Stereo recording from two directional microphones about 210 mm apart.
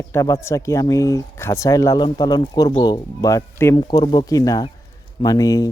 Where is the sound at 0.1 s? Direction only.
15° left (ahead or behind).